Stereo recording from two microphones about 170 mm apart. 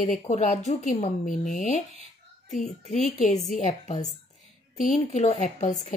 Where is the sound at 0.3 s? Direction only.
45° left (ahead or behind).